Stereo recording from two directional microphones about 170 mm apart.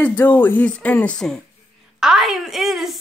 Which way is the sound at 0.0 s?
10° left (ahead or behind).